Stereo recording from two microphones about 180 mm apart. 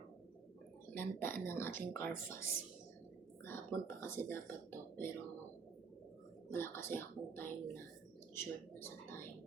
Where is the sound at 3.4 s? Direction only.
15° left (ahead or behind).